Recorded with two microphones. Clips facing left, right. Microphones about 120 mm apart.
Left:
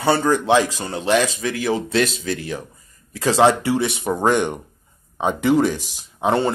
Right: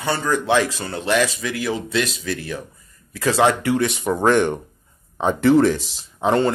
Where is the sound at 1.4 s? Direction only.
35° left (ahead or behind).